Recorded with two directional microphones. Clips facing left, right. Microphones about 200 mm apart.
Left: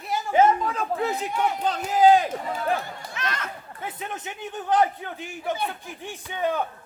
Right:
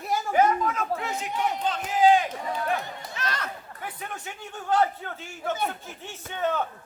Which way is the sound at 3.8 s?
20° left (ahead or behind).